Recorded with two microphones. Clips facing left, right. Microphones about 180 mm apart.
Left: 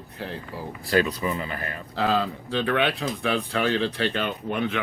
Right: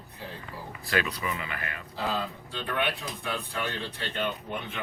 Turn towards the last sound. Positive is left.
turn(degrees=90)